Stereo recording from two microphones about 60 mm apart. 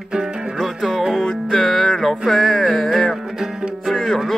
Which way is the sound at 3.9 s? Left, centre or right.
Centre.